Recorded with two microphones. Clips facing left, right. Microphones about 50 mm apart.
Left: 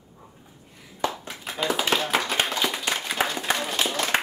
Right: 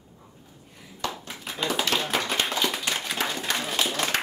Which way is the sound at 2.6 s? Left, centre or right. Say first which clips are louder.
Left 1 dB; centre.